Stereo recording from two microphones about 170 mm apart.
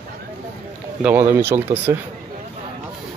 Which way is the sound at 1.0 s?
10° right (ahead or behind).